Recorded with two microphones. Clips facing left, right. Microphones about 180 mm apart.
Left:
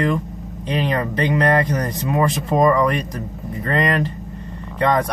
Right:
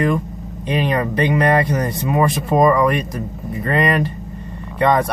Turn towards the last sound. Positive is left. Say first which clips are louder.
# right 2 dB
turn(degrees=-10)  # may be behind; listen again after turning